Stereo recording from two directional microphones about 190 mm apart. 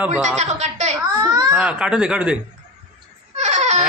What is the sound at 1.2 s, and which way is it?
Baby cry, 20° right (ahead or behind).